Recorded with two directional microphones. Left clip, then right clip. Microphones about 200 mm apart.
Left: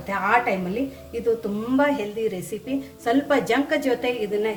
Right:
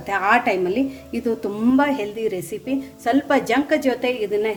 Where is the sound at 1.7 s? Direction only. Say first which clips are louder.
Left 2 dB; 45° right (ahead or behind).